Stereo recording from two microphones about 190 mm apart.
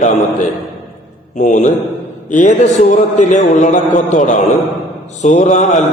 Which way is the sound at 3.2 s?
40° left (ahead or behind).